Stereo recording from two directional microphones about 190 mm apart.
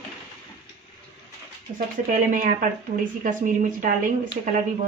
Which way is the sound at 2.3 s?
45° right (ahead or behind).